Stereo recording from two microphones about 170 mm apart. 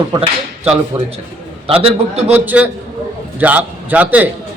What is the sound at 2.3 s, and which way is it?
A man's voice, 10° right (ahead or behind).